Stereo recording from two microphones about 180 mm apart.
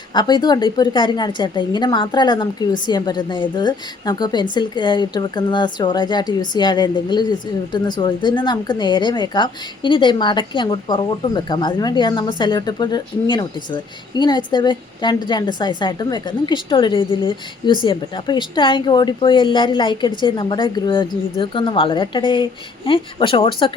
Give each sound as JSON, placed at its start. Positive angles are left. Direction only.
{"t": 0.1, "sound": "a woman's voice", "side_deg": 25}